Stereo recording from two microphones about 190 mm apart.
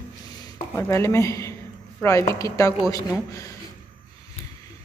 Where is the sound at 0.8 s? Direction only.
15° left (ahead or behind).